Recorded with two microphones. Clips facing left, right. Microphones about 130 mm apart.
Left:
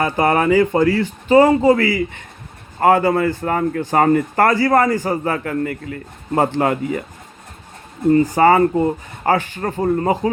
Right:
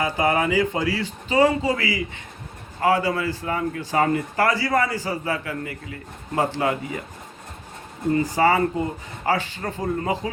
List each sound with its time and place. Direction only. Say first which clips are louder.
0.0 s a man's voice: left 5 dB; 55° left (ahead or behind)
8.4 s a man's voice: left 5 dB; 50° left (ahead or behind)
8.7 s speech: left 8 dB; 35° left (ahead or behind)
9.3 s a man's voice: left 6 dB; 50° left (ahead or behind)